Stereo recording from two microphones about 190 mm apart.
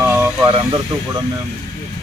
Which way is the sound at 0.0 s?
10° right (ahead or behind).